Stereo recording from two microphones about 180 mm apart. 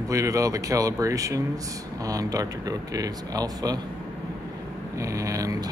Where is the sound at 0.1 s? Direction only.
20° right (ahead or behind).